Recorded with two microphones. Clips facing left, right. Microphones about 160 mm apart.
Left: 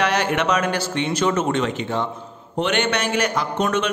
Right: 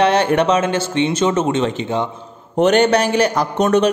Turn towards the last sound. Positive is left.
turn(degrees=-40)  # may be behind; listen again after turning